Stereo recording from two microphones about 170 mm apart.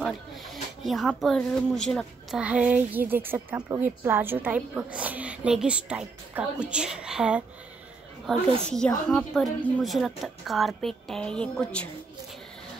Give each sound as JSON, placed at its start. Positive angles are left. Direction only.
{"t": 0.0, "sound": "speech", "side_deg": 0}
{"t": 2.4, "sound": "a woman's voice", "side_deg": -5}